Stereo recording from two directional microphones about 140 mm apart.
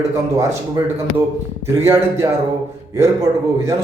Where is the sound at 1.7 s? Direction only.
20° right (ahead or behind).